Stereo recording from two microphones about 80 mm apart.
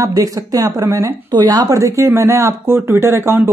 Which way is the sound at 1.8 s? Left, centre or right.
Right.